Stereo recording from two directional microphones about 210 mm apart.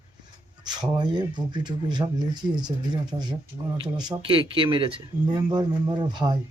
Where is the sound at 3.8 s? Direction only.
20° right (ahead or behind).